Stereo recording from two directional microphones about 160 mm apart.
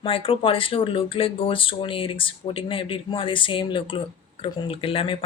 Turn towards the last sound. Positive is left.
turn(degrees=35)  # may be behind; listen again after turning